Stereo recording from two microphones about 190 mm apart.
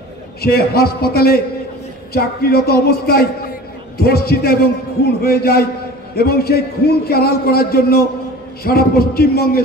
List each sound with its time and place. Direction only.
0.4 s a man's voice: 55° left (ahead or behind)